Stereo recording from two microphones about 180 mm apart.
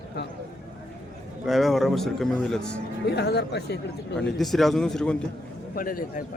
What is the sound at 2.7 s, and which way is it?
Speech, 65° left (ahead or behind).